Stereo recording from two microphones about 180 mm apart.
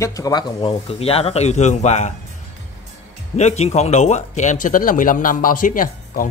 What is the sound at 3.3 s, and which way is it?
Speech, 40° left (ahead or behind).